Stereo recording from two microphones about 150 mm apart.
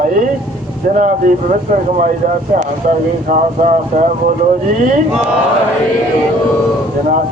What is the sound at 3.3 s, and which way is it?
Speech, 60° right (ahead or behind).